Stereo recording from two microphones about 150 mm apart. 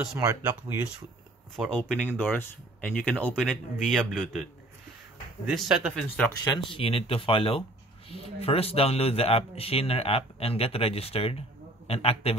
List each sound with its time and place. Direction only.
0.3 s speech: 20° right (ahead or behind)
1.7 s speech: 5° left (ahead or behind)
5.5 s speech: centre (ahead or behind)
6.4 s speech: 25° left (ahead or behind)
6.8 s speech: 40° left (ahead or behind)